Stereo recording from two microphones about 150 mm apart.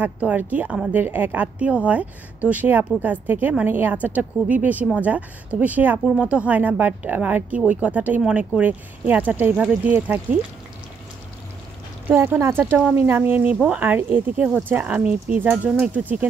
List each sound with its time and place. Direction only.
0.0 s speech: 10° right (ahead or behind)
12.1 s speech: 15° right (ahead or behind)